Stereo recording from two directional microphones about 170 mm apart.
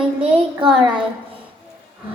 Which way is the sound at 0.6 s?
30° right (ahead or behind).